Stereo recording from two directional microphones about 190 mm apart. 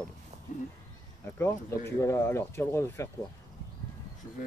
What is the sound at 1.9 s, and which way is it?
Speech, 15° left (ahead or behind).